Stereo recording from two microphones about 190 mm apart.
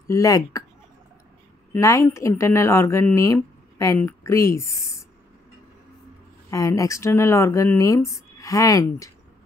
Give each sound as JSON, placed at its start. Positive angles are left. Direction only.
{"t": 0.1, "sound": "speech", "side_deg": 15}
{"t": 1.7, "sound": "speech", "side_deg": 15}
{"t": 6.5, "sound": "speech", "side_deg": 15}